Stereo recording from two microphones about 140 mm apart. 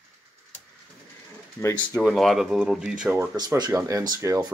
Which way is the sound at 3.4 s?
25° right (ahead or behind).